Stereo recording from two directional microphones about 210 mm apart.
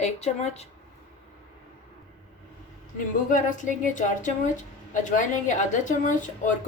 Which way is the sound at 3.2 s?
40° left (ahead or behind).